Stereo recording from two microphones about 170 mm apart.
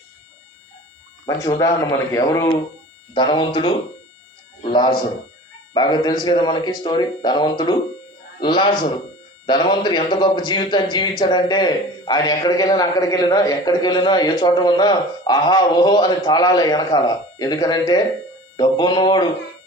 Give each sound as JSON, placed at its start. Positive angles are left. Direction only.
{"t": 1.5, "sound": "a man's voice", "side_deg": 20}